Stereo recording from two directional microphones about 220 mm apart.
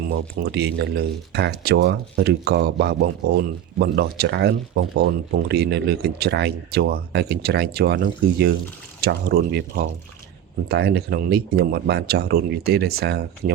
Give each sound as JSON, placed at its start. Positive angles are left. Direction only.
{"t": 0.3, "sound": "speech", "side_deg": -50}